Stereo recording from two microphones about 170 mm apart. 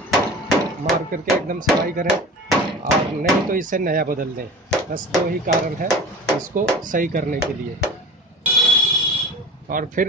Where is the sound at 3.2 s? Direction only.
55° right (ahead or behind).